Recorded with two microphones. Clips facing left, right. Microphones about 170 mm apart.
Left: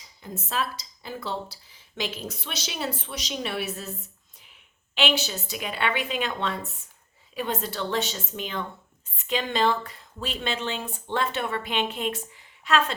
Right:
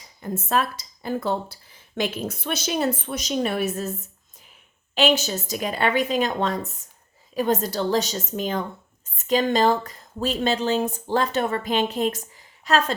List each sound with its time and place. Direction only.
0.2 s speech: 55° right (ahead or behind)
4.9 s speech: 45° right (ahead or behind)